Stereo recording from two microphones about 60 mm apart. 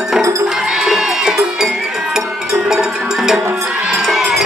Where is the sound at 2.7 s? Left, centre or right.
Centre.